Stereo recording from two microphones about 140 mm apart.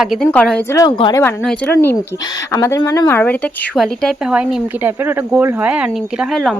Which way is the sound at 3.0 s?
15° left (ahead or behind).